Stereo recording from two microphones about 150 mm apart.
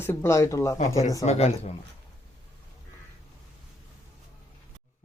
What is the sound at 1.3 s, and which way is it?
Speech, 45° left (ahead or behind).